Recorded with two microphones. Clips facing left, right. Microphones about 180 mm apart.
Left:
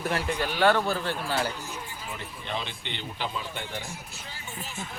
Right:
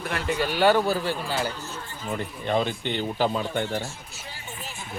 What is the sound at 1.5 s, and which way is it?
Speech, 10° left (ahead or behind).